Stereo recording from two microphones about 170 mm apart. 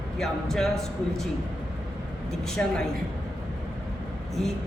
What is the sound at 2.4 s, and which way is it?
Speech, 5° left (ahead or behind).